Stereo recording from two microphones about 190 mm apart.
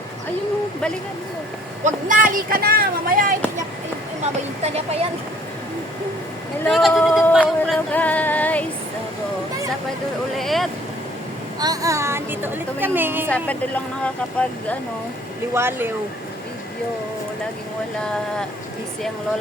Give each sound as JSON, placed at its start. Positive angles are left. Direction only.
{"t": 1.8, "sound": "speech", "side_deg": -45}
{"t": 4.6, "sound": "speech", "side_deg": -35}
{"t": 6.7, "sound": "a sound", "side_deg": 0}
{"t": 10.3, "sound": "speech", "side_deg": 0}
{"t": 11.6, "sound": "a woman's voice", "side_deg": -20}
{"t": 13.3, "sound": "speech", "side_deg": 5}
{"t": 15.5, "sound": "a woman's voice", "side_deg": -10}